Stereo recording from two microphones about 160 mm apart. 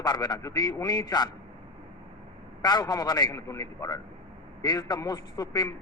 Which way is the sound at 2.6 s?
25° left (ahead or behind).